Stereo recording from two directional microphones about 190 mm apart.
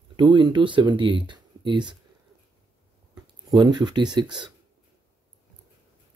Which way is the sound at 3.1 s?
20° right (ahead or behind).